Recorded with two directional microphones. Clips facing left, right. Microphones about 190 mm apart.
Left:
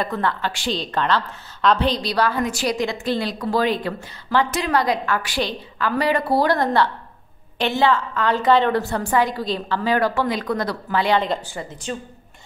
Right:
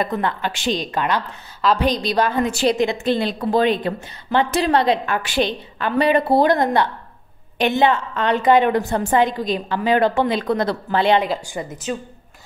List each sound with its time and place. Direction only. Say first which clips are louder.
0.0 s a woman's voice: right 1 dB; 15° right (ahead or behind)
1.9 s a woman's voice: right 2 dB; 20° right (ahead or behind)
11.4 s a woman's voice: right 4 dB; 10° right (ahead or behind)